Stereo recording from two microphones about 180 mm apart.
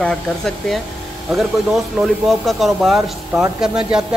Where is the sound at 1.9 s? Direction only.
Centre (ahead or behind).